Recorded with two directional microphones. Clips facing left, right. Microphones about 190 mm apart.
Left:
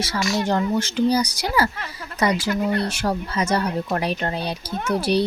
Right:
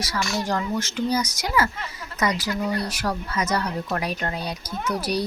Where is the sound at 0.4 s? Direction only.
30° left (ahead or behind).